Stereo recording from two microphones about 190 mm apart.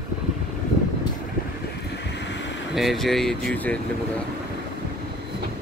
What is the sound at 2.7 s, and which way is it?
Speech, centre (ahead or behind).